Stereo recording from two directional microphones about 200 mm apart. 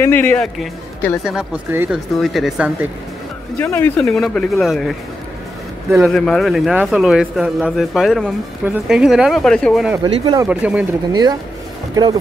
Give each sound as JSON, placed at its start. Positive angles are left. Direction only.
{"t": 0.0, "sound": "a man's voice", "side_deg": 10}
{"t": 3.5, "sound": "a man's voice", "side_deg": 10}
{"t": 6.0, "sound": "a man's voice", "side_deg": 5}
{"t": 10.0, "sound": "speech", "side_deg": -20}
{"t": 10.5, "sound": "speech", "side_deg": -5}
{"t": 11.9, "sound": "speech", "side_deg": -20}